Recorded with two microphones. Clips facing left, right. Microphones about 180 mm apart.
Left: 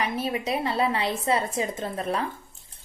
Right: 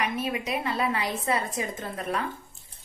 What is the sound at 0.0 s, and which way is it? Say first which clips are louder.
A woman's voice: left 2 dB; 30° left (ahead or behind).